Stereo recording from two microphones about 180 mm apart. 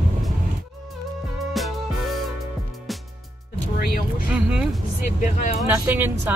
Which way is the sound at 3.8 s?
60° left (ahead or behind).